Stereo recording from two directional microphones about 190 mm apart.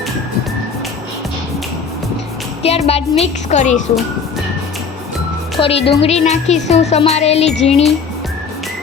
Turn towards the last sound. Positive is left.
turn(degrees=35)  # may be behind; listen again after turning